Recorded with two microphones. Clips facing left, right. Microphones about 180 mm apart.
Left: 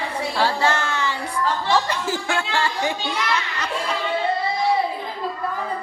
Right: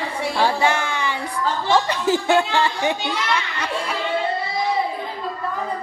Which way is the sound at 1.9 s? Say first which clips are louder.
Right 6 dB; 20° right (ahead or behind).